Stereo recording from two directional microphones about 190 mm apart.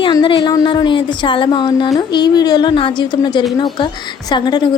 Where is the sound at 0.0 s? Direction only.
25° left (ahead or behind).